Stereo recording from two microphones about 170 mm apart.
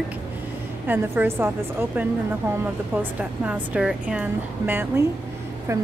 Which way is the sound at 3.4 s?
10° right (ahead or behind).